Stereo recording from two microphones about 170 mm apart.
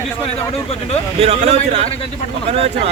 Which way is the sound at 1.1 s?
35° right (ahead or behind).